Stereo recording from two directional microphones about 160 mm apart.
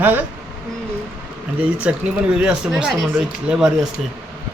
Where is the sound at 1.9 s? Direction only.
5° right (ahead or behind).